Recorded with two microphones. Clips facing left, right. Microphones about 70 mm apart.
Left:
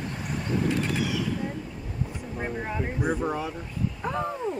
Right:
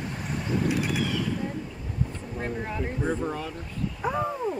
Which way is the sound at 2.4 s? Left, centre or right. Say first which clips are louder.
Even; centre.